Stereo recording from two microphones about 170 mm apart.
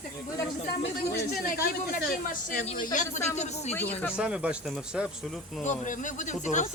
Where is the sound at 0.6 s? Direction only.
65° left (ahead or behind); by 3.7 s 40° left (ahead or behind).